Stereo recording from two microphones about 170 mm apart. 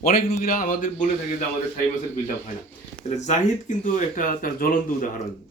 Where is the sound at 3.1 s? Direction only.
40° left (ahead or behind).